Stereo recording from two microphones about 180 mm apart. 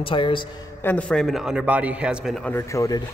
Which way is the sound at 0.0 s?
25° left (ahead or behind).